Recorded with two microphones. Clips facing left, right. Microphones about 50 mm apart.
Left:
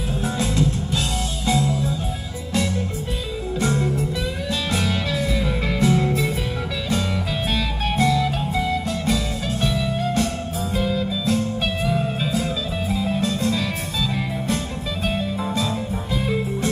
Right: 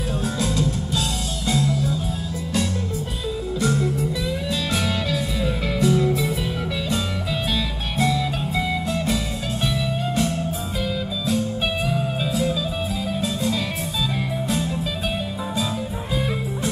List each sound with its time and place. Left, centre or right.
0.4 s music: left
3.5 s music: left
5.1 s music: left
12.3 s music: left